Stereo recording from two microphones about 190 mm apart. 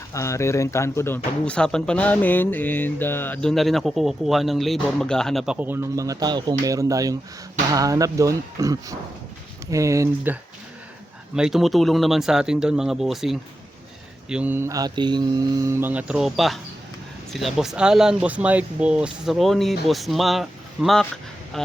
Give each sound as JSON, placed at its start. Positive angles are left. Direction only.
{"t": 0.1, "sound": "speech", "side_deg": 15}
{"t": 11.3, "sound": "speech", "side_deg": 0}